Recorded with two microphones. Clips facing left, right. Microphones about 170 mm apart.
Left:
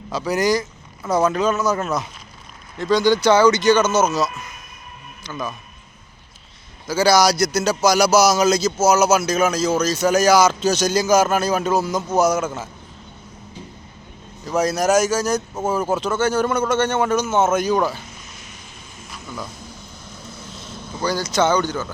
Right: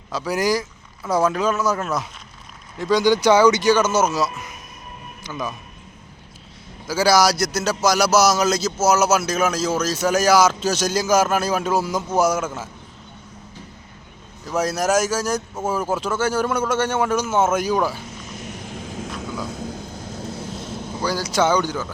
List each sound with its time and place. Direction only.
0.1 s a man's voice: 5° right (ahead or behind)
6.8 s a man's voice: 5° right (ahead or behind)
14.4 s a man's voice: 5° right (ahead or behind)
18.3 s vehicle: 65° right (ahead or behind); by 19.1 s 90° right
19.5 s vehicle: 60° right (ahead or behind)
21.0 s speech: 5° right (ahead or behind)